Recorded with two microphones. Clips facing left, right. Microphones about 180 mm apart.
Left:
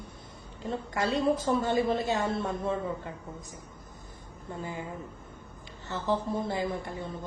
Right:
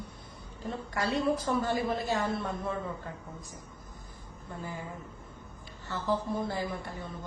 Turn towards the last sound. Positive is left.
turn(degrees=25)  # may be behind; listen again after turning